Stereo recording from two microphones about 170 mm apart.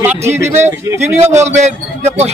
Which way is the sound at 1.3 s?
40° right (ahead or behind).